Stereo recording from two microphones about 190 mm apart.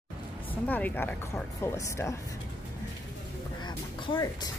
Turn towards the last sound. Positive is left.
turn(degrees=20)  # may be behind; listen again after turning